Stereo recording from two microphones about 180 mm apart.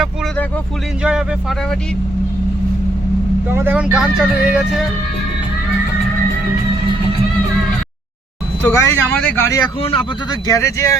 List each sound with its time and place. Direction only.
1.0 s speech: 5° right (ahead or behind)
3.5 s speech: 10° right (ahead or behind)
8.6 s speech: 15° left (ahead or behind)
9.8 s speech: 30° left (ahead or behind)
10.4 s speech: 15° left (ahead or behind)